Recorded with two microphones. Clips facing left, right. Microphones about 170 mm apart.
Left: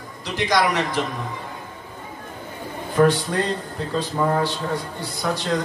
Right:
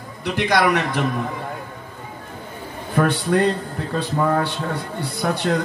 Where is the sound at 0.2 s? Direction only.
60° right (ahead or behind).